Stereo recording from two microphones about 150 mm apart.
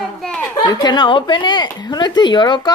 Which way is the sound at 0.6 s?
30° left (ahead or behind).